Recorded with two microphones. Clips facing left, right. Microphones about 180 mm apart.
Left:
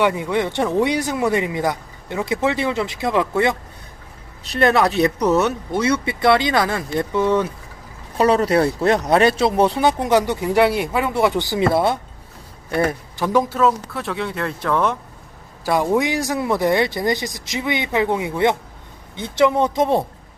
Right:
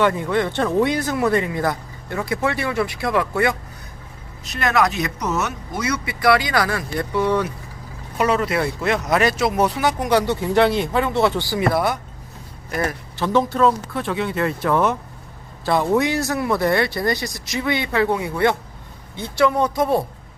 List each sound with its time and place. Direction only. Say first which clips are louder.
0.0 s speech: even; 15° left (ahead or behind)
8.2 s speech: left 4 dB; 35° left (ahead or behind)
13.1 s speech: right 1 dB; 10° left (ahead or behind); by 14.9 s 5° right (ahead or behind)
15.6 s speech: even; 10° left (ahead or behind)